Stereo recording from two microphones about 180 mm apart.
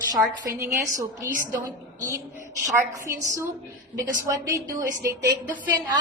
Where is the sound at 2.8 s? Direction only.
15° right (ahead or behind).